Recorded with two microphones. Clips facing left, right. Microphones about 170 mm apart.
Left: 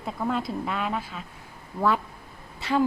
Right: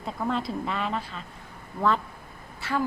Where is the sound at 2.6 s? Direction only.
15° left (ahead or behind).